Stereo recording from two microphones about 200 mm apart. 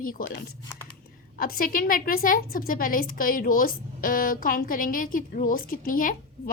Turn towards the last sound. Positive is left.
turn(degrees=45)  # may be behind; listen again after turning